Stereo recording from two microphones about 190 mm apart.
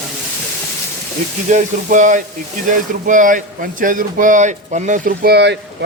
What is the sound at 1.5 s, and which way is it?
Sizzle, 40° right (ahead or behind).